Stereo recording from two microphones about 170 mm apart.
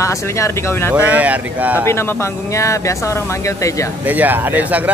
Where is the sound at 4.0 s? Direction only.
10° right (ahead or behind).